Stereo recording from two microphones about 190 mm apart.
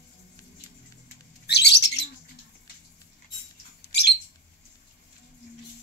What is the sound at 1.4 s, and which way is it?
Bird, 60° left (ahead or behind).